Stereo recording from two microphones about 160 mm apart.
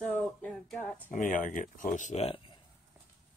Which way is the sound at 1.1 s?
55° left (ahead or behind).